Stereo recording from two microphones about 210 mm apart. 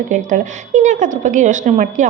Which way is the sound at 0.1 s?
35° right (ahead or behind).